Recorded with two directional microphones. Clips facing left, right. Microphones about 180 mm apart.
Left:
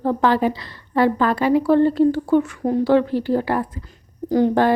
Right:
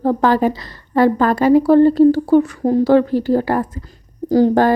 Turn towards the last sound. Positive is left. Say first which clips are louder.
# right 4 dB
turn(degrees=-40)  # may be behind; listen again after turning